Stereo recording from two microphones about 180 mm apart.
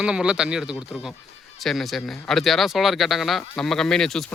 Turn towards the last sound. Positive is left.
turn(degrees=5)  # may be behind; listen again after turning